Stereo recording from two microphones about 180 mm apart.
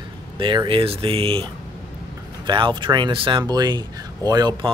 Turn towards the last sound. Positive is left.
turn(degrees=-25)  # may be behind; listen again after turning